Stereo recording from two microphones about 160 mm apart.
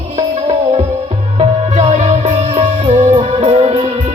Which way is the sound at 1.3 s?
40° right (ahead or behind).